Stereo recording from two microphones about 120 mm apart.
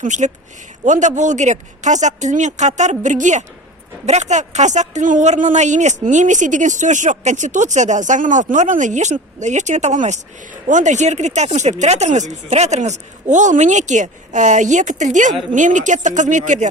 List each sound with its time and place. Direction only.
0.0 s speech: 90° right
4.0 s speech: 75° right (ahead or behind); by 16.6 s 90° right